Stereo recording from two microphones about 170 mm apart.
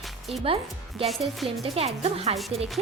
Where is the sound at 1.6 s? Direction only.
35° right (ahead or behind).